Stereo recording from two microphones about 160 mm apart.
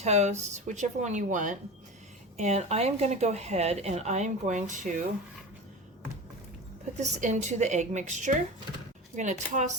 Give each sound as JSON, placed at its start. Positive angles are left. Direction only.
{"t": 0.0, "sound": "speech", "side_deg": -45}
{"t": 7.0, "sound": "speech", "side_deg": -45}